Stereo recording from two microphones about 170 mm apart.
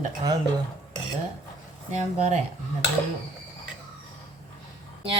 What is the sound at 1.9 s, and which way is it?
Speech, 40° right (ahead or behind).